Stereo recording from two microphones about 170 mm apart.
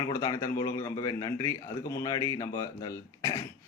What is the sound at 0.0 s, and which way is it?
A man's voice, 25° left (ahead or behind).